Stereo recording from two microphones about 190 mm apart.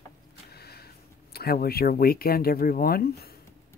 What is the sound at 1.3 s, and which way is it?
Speech, 55° left (ahead or behind).